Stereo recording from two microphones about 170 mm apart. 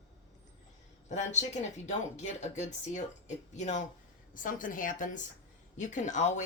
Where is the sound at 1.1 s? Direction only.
45° left (ahead or behind).